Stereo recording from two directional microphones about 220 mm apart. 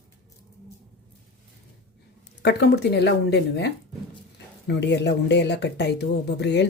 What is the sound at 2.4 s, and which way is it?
Speech, 50° left (ahead or behind).